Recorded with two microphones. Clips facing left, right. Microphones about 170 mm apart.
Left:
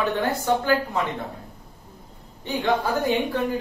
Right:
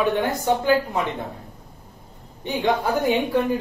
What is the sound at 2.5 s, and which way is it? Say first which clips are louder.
Speech: right 1 dB; 10° right (ahead or behind).